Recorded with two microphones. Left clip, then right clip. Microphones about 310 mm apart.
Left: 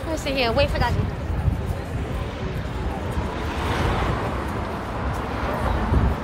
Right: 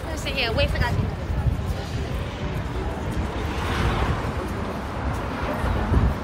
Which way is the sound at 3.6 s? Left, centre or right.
Left.